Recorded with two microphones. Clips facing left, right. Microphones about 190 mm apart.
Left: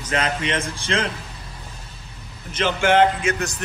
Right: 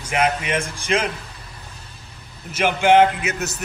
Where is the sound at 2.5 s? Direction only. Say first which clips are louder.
Right 3 dB; 15° right (ahead or behind).